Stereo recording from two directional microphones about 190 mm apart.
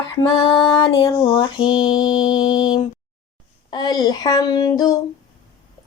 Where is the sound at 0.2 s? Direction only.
25° left (ahead or behind).